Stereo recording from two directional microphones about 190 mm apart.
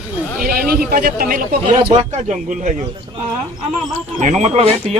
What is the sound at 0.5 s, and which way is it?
A man's voice, 50° right (ahead or behind).